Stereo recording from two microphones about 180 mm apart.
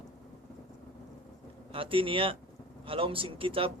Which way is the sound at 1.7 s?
30° right (ahead or behind).